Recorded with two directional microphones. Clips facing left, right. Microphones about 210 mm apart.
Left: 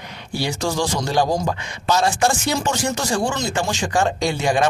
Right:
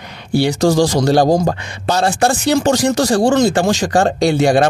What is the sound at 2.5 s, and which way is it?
Speech, 65° right (ahead or behind).